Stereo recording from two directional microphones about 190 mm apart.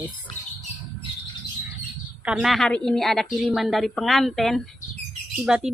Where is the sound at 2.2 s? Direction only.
Centre (ahead or behind).